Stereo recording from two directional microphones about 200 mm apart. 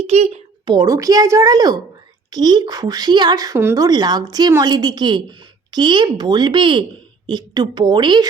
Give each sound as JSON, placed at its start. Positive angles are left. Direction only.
{"t": 0.0, "sound": "speech", "side_deg": -30}